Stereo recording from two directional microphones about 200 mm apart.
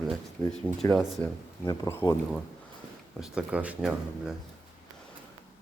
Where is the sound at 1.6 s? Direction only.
15° left (ahead or behind).